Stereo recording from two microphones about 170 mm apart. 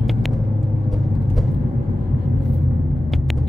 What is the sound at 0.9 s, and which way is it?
Music, centre (ahead or behind).